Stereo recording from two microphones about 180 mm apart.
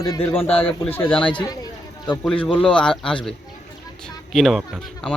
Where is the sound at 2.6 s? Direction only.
5° left (ahead or behind).